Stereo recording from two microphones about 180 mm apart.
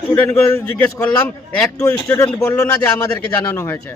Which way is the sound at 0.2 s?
15° left (ahead or behind).